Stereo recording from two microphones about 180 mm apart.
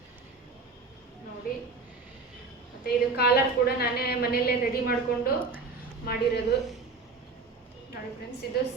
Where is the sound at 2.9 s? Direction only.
60° left (ahead or behind).